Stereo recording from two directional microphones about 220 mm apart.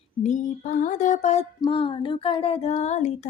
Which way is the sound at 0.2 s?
35° left (ahead or behind).